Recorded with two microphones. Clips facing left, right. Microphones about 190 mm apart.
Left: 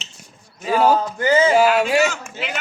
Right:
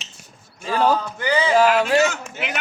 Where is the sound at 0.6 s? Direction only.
10° left (ahead or behind).